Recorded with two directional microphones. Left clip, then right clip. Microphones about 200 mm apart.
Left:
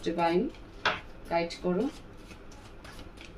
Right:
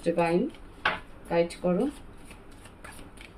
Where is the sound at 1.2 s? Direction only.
45° right (ahead or behind).